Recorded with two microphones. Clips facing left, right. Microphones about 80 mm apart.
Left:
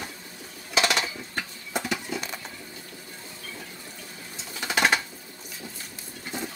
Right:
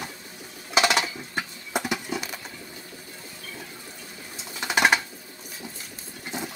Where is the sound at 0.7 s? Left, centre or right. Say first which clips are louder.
Right 3 dB; right.